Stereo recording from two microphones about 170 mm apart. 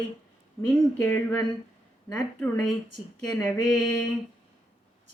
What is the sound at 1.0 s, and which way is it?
A woman's voice, 10° left (ahead or behind).